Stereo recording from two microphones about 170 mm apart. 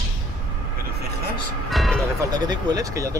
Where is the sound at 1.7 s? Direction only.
Centre (ahead or behind).